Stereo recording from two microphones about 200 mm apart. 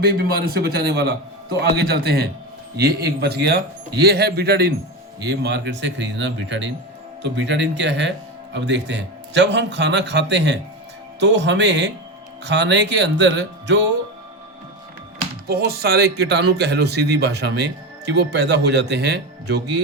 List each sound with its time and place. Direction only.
0.0 s speech: 50° right (ahead or behind)
15.4 s speech: 55° right (ahead or behind)